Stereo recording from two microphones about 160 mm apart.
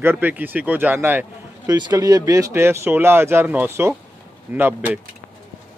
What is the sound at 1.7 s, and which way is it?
Speech, 25° right (ahead or behind).